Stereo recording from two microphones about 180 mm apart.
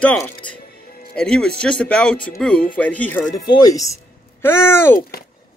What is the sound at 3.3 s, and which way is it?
Speech, 20° left (ahead or behind).